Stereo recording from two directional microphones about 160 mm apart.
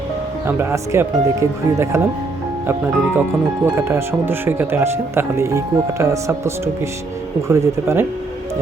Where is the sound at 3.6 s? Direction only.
15° right (ahead or behind).